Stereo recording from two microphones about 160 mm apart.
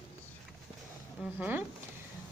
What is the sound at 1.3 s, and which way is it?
Speech, 10° right (ahead or behind).